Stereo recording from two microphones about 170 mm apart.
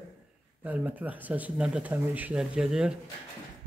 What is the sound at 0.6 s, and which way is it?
Speech, 10° right (ahead or behind).